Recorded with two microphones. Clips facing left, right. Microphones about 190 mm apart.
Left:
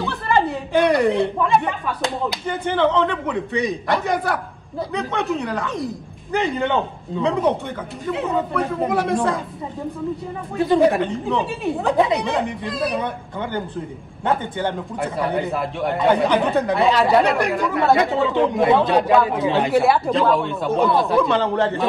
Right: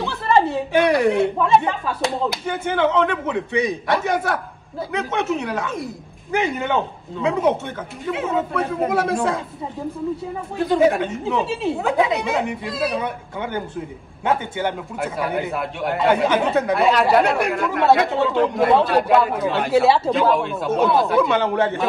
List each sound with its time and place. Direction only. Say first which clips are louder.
0.0 s a sound: right 2 dB; centre (ahead or behind)
2.0 s speech: right 2 dB; centre (ahead or behind)
10.6 s speech: left 1 dB; centre (ahead or behind)
14.6 s speech: even; 5° right (ahead or behind)